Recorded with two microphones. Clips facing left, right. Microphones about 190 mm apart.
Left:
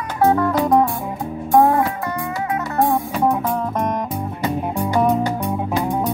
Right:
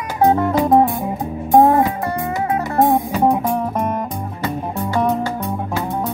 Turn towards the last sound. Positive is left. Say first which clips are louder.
# left 2 dB
turn(degrees=15)  # may be behind; listen again after turning